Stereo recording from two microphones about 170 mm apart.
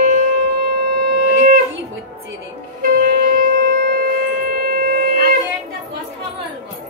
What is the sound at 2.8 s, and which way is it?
Wind instrument, 60° right (ahead or behind).